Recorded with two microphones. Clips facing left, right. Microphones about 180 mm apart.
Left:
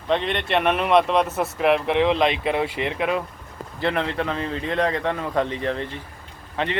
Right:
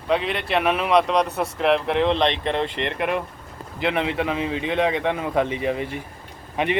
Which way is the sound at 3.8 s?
5° right (ahead or behind).